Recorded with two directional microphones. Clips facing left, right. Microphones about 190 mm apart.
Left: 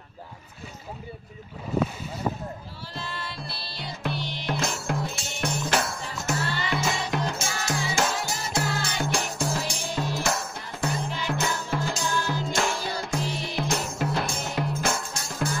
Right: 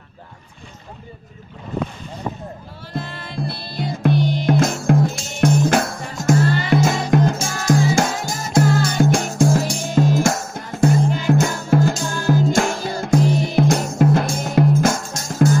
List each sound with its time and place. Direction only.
2.9 s music: 55° right (ahead or behind)